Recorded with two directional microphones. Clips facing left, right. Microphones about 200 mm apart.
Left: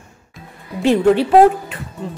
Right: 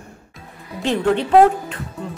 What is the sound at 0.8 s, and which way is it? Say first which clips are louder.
Speech: left 5 dB; 5° left (ahead or behind).